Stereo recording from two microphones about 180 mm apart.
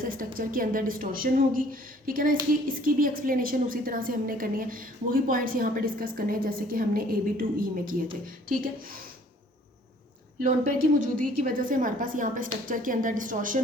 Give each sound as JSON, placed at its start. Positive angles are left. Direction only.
{"t": 0.0, "sound": "a woman's voice", "side_deg": -50}
{"t": 10.4, "sound": "a woman's voice", "side_deg": -45}